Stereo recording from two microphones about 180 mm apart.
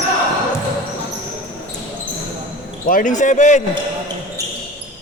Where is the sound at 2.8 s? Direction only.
50° left (ahead or behind).